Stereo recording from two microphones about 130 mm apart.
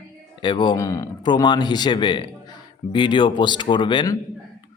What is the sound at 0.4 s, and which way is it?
A man's voice, 35° left (ahead or behind).